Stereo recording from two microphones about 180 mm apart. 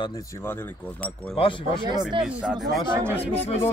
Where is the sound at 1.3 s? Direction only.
30° left (ahead or behind).